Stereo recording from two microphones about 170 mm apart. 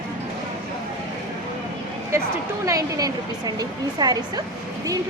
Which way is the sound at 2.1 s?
15° right (ahead or behind).